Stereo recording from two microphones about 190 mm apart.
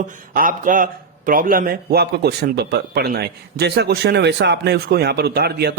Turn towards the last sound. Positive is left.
turn(degrees=-55)  # may be behind; listen again after turning